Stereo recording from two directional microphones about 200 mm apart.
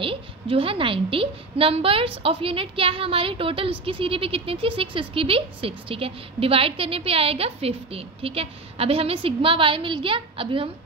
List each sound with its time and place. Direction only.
0.0 s speech: 25° right (ahead or behind)